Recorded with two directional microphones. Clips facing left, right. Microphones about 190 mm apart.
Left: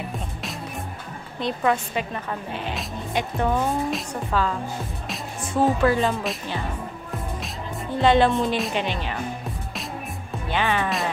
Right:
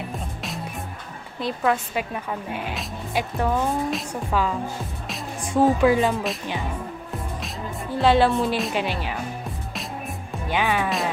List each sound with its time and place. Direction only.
1.4 s speech: centre (ahead or behind)
4.3 s speech: 10° right (ahead or behind)
8.0 s speech: 5° right (ahead or behind)
10.5 s speech: 10° right (ahead or behind)